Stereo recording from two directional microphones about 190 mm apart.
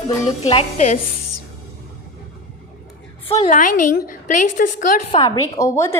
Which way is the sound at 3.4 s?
45° left (ahead or behind).